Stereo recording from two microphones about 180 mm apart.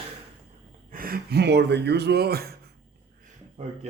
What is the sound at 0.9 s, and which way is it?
Speech, 55° right (ahead or behind).